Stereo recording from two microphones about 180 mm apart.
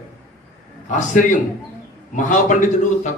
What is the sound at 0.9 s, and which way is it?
A man's voice, 45° left (ahead or behind).